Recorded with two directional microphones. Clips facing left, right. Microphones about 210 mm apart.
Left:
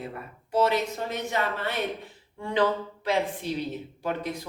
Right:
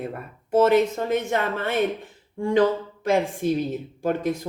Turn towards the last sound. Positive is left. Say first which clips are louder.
# right 7 dB
turn(degrees=-45)  # may be behind; listen again after turning